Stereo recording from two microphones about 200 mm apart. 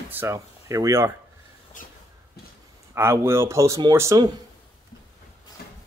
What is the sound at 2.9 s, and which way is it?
Speech, 10° right (ahead or behind).